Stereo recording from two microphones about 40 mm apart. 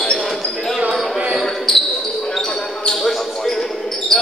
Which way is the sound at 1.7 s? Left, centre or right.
Centre.